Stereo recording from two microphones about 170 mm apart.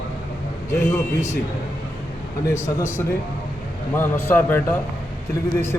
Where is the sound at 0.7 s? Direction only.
15° left (ahead or behind).